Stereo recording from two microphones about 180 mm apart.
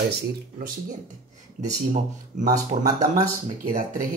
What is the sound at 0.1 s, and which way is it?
Speech, 55° right (ahead or behind).